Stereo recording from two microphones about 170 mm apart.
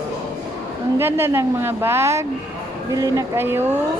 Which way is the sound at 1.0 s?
15° right (ahead or behind).